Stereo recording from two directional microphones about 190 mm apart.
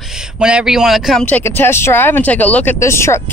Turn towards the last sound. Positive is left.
turn(degrees=15)  # may be behind; listen again after turning